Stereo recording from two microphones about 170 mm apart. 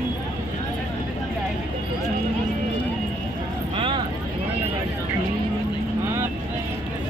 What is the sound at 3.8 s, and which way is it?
Vehicle, 30° right (ahead or behind).